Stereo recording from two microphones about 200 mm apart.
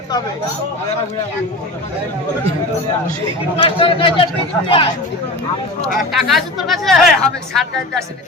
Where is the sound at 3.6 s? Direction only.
25° left (ahead or behind).